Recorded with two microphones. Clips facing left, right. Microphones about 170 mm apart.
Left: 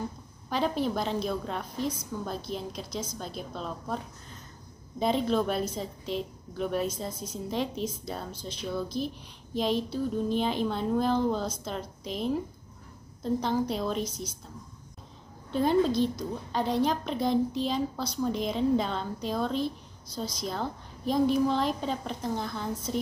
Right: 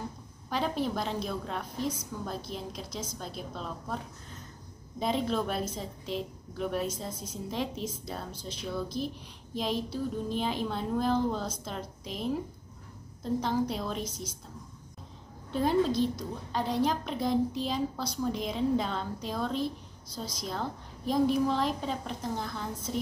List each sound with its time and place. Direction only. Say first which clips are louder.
0.5 s a woman's voice: left 2 dB; centre (ahead or behind)
8.3 s speech: left 2 dB; 25° left (ahead or behind)
8.5 s a woman's voice: left 2 dB; centre (ahead or behind)
15.5 s a woman's voice: left 2 dB; centre (ahead or behind)